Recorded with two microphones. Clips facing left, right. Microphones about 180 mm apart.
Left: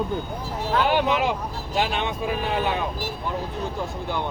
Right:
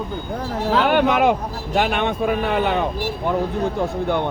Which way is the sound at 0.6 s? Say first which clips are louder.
Right 4 dB; 70° right (ahead or behind).